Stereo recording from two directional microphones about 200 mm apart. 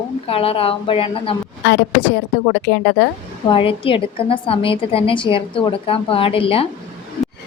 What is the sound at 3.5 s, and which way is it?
A woman's voice, 25° left (ahead or behind).